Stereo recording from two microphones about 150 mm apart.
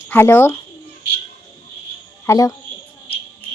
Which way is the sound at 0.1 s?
15° left (ahead or behind).